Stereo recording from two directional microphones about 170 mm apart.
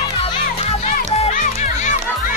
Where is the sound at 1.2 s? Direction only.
45° left (ahead or behind).